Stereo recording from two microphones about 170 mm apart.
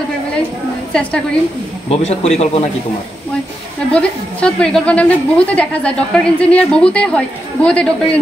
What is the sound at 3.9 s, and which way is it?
A woman's voice, 5° left (ahead or behind).